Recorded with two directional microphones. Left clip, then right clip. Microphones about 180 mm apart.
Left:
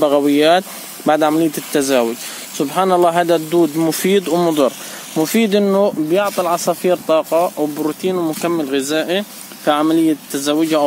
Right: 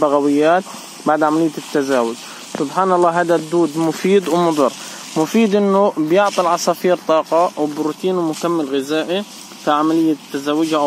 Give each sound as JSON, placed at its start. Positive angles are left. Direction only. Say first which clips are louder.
{"t": 0.0, "sound": "speech", "louder": "left 1 dB", "side_deg": 35}
{"t": 3.5, "sound": "speech", "louder": "left 2 dB", "side_deg": 30}
{"t": 8.7, "sound": "speech", "louder": "left 1 dB", "side_deg": 40}